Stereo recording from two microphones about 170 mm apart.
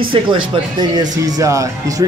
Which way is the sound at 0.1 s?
30° right (ahead or behind).